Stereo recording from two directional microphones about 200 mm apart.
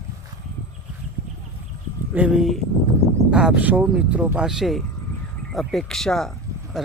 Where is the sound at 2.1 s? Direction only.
5° right (ahead or behind).